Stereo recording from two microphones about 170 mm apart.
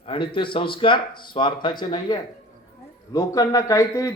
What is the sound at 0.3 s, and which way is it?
A man's voice, 30° left (ahead or behind).